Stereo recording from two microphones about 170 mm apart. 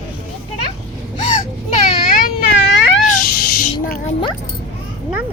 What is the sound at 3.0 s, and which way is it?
Snake, 55° left (ahead or behind).